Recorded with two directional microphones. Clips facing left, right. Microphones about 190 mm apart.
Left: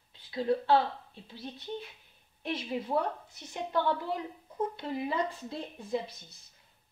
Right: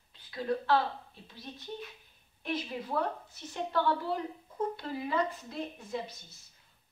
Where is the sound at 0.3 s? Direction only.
25° left (ahead or behind).